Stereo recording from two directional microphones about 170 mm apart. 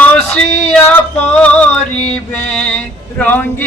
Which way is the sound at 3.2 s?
10° left (ahead or behind).